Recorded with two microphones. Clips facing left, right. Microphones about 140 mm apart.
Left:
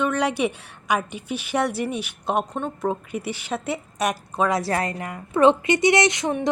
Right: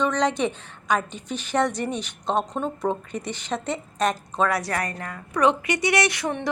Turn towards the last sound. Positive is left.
turn(degrees=20)  # may be behind; listen again after turning